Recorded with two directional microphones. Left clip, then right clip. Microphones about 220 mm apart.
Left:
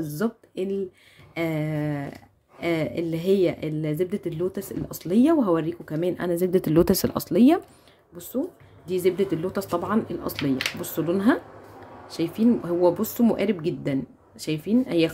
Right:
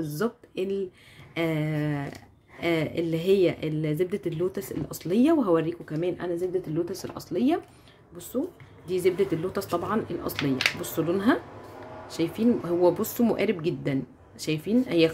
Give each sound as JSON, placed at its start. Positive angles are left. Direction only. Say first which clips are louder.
{"t": 0.0, "sound": "a woman's voice", "louder": "left 1 dB", "side_deg": 10}
{"t": 6.3, "sound": "speech", "louder": "left 7 dB", "side_deg": 30}
{"t": 8.8, "sound": "a woman's voice", "louder": "left 1 dB", "side_deg": 10}